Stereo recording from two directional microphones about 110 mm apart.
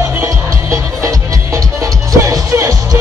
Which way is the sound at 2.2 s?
30° right (ahead or behind).